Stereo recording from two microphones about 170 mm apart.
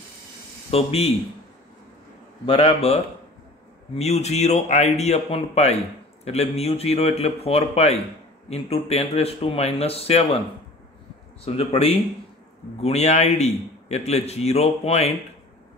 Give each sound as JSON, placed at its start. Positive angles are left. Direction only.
{"t": 0.7, "sound": "a man's voice", "side_deg": 35}
{"t": 2.4, "sound": "a man's voice", "side_deg": 35}
{"t": 11.4, "sound": "a man's voice", "side_deg": 35}